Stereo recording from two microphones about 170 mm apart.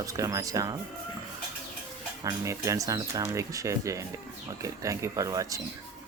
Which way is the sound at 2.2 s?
20° right (ahead or behind).